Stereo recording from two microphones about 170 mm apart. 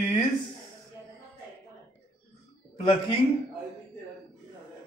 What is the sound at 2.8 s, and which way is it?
Speech, 30° left (ahead or behind).